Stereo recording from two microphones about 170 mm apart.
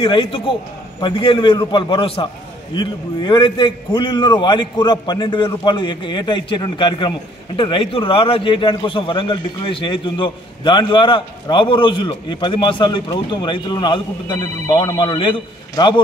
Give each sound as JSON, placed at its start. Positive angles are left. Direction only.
{"t": 0.0, "sound": "a man's voice", "side_deg": 30}